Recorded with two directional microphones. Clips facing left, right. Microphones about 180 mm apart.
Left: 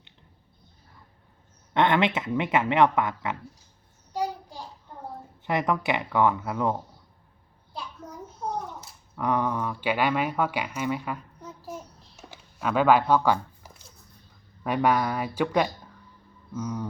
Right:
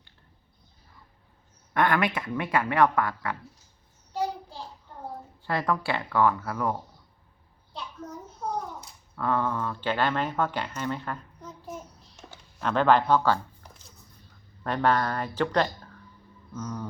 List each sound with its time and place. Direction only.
1.7 s speech: 25° left (ahead or behind)
4.1 s child singing: 15° left (ahead or behind)
5.4 s speech: 20° left (ahead or behind)
7.7 s a sound: 10° left (ahead or behind)
9.1 s speech: 15° left (ahead or behind)